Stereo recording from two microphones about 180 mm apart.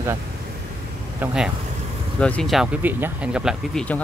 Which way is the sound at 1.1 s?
5° right (ahead or behind).